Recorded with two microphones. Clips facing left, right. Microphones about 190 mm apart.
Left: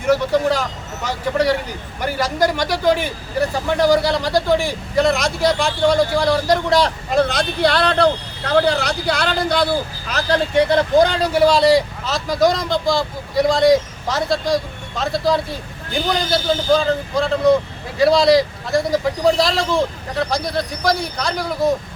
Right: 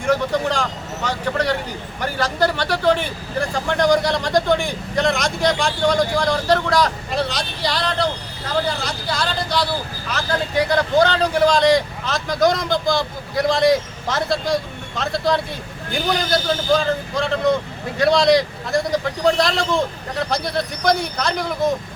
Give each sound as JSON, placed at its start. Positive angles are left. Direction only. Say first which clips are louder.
{"t": 0.0, "sound": "a man's voice", "louder": "left 3 dB", "side_deg": 5}
{"t": 6.7, "sound": "a man's voice", "louder": "left 2 dB", "side_deg": 25}
{"t": 7.1, "sound": "speech", "louder": "left 6 dB", "side_deg": 50}
{"t": 10.2, "sound": "a man's voice", "louder": "left 5 dB", "side_deg": 25}